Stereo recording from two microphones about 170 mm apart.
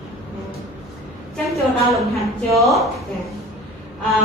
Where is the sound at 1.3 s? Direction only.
Centre (ahead or behind).